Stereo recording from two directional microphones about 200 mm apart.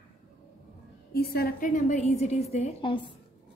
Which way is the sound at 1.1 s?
50° left (ahead or behind).